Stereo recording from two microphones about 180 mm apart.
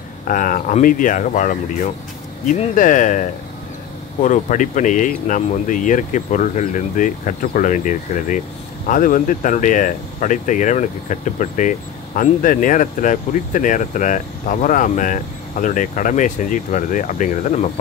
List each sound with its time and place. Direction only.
0.3 s speech: 45° left (ahead or behind)